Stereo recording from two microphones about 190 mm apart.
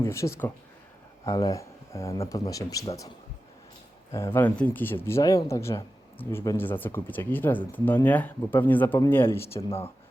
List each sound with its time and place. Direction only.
0.0 s speech: 15° left (ahead or behind)
4.1 s speech: 15° left (ahead or behind)